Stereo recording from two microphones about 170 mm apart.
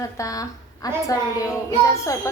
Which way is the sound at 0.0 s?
20° left (ahead or behind).